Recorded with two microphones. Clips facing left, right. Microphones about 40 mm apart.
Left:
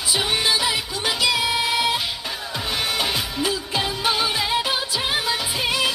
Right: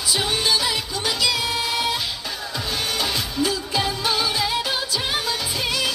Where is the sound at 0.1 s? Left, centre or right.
Left.